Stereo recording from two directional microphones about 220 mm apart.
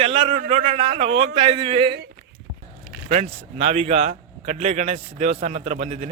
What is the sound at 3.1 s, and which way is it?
Speech, 30° right (ahead or behind).